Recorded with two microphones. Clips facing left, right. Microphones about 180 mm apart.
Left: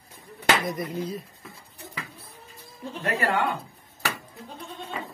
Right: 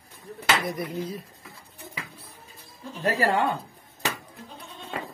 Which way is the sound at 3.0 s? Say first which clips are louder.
Right 2 dB; 30° right (ahead or behind).